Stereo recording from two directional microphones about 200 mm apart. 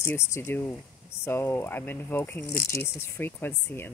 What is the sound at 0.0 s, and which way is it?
Speech, 10° left (ahead or behind).